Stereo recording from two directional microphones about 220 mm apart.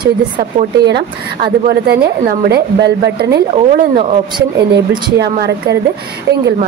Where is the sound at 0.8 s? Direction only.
50° right (ahead or behind).